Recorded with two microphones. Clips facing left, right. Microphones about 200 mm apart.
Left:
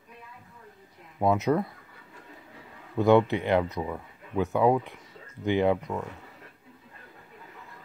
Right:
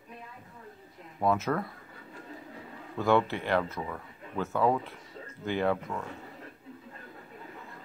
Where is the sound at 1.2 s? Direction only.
20° left (ahead or behind).